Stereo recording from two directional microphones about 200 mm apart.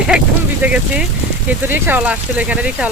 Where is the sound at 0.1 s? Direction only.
5° right (ahead or behind).